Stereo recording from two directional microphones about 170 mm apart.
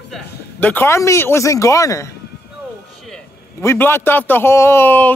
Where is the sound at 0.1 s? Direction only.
10° left (ahead or behind).